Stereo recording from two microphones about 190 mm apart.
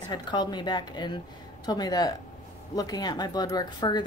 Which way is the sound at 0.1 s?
20° left (ahead or behind).